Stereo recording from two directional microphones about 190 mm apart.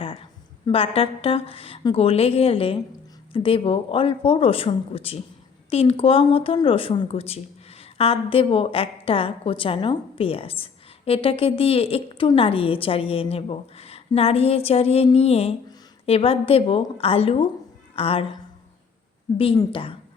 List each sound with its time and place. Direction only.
0.0 s a woman's voice: 30° left (ahead or behind)
19.5 s speech: 30° left (ahead or behind)